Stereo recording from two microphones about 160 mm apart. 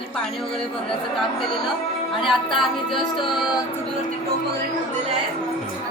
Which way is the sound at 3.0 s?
30° left (ahead or behind).